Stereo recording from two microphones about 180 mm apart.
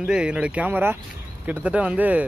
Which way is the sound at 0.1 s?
5° right (ahead or behind).